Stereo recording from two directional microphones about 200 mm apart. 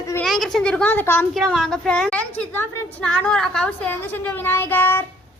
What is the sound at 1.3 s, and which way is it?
A woman's voice, centre (ahead or behind).